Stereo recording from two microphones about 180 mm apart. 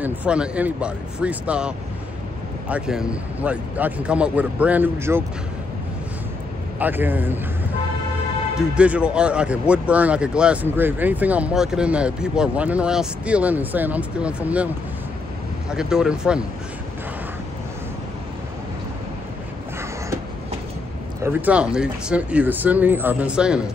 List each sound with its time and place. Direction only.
0.0 s speech: 5° right (ahead or behind)
2.7 s speech: 5° right (ahead or behind)
6.8 s speech: 10° right (ahead or behind)
8.5 s speech: 5° right (ahead or behind)
15.7 s speech: 5° right (ahead or behind)
21.2 s speech: 10° right (ahead or behind)